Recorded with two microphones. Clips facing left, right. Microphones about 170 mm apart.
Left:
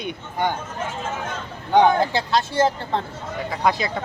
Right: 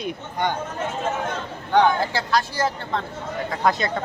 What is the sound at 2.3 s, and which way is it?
Speech, 25° left (ahead or behind).